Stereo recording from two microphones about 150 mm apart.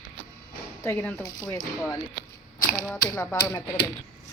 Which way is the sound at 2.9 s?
20° left (ahead or behind).